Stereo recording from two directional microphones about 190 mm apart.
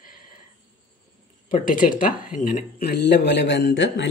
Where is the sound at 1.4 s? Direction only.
45° left (ahead or behind).